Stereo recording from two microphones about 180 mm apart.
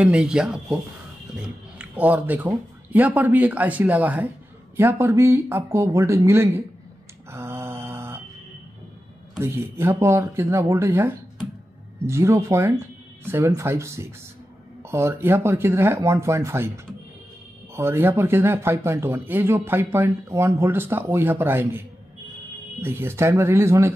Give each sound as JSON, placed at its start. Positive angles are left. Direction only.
{"t": 0.0, "sound": "speech", "side_deg": -5}
{"t": 1.8, "sound": "speech", "side_deg": -10}
{"t": 7.2, "sound": "mantra", "side_deg": -15}
{"t": 9.4, "sound": "speech", "side_deg": -15}